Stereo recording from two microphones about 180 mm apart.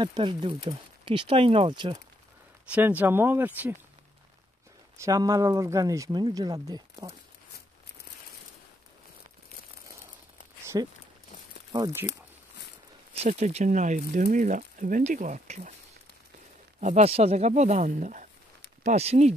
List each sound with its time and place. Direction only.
0.0 s speech: 25° right (ahead or behind)
2.7 s speech: 10° right (ahead or behind)
4.9 s speech: 20° right (ahead or behind)
10.7 s speech: 20° right (ahead or behind)
13.1 s speech: 35° right (ahead or behind)
16.8 s speech: 35° right (ahead or behind)